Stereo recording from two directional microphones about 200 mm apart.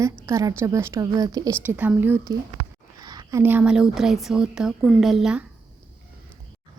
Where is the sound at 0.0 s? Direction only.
15° right (ahead or behind).